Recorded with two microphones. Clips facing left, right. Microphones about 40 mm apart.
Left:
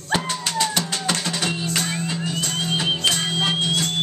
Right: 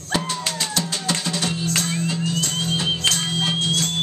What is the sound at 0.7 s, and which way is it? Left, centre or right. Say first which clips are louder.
Music: left 1 dB; centre.